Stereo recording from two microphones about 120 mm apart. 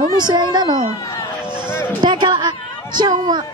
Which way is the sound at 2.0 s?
40° right (ahead or behind).